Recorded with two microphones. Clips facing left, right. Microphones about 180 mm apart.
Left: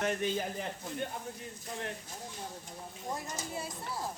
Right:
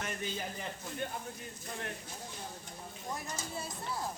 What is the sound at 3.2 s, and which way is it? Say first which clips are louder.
Speech: left 2 dB; 20° left (ahead or behind).